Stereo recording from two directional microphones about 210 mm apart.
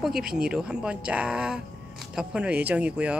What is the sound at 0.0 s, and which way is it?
Speech, centre (ahead or behind).